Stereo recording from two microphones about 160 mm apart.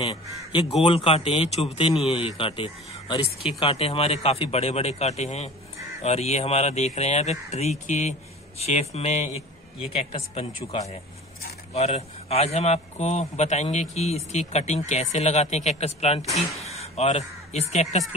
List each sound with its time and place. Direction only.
0.0 s a man's voice: 35° left (ahead or behind)